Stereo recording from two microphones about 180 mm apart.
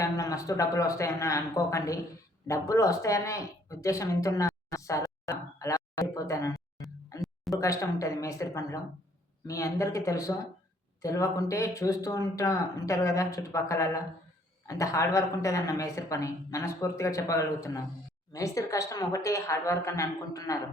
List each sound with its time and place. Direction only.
0.0 s speech: 20° left (ahead or behind)
7.2 s a sound: centre (ahead or behind)
7.6 s speech: 15° left (ahead or behind)